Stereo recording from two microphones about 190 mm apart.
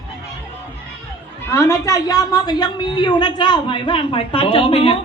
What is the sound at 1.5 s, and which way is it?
A woman's voice, 15° left (ahead or behind).